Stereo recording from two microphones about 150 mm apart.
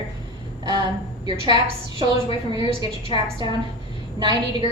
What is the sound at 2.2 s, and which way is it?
Speech, 35° left (ahead or behind).